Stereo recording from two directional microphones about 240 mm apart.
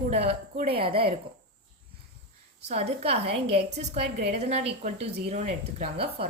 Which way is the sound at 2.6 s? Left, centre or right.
Right.